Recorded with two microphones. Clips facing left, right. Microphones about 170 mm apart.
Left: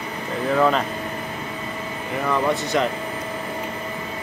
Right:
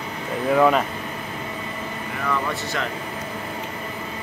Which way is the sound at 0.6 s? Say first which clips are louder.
Right 2 dB; 5° right (ahead or behind).